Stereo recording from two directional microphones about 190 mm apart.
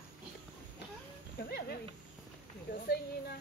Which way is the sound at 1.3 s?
55° left (ahead or behind).